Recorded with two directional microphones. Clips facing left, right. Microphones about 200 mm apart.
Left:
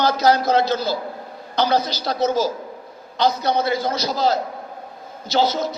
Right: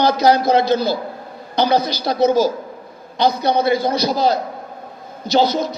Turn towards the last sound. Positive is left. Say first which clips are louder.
# right 3 dB
turn(degrees=-15)  # may be behind; listen again after turning